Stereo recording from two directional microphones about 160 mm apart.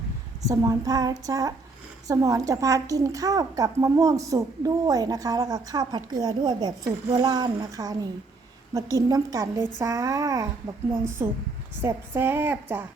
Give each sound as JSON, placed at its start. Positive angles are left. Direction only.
{"t": 0.4, "sound": "a woman's voice", "side_deg": -20}